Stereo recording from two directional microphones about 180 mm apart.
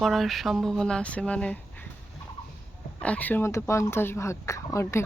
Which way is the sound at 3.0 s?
5° left (ahead or behind).